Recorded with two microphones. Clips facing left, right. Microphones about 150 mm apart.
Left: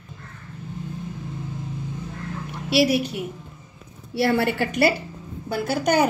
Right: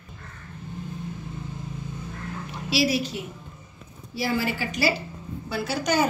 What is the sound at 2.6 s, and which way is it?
A woman's voice, 60° left (ahead or behind).